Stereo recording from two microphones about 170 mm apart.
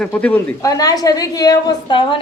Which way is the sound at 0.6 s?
20° left (ahead or behind).